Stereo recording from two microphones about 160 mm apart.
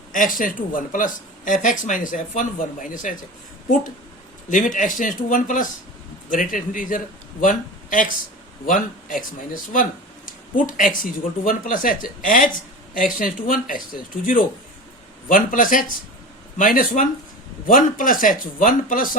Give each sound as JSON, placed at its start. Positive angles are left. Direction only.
{"t": 0.1, "sound": "a man's voice", "side_deg": 55}
{"t": 4.4, "sound": "a man's voice", "side_deg": 55}
{"t": 15.3, "sound": "a man's voice", "side_deg": 60}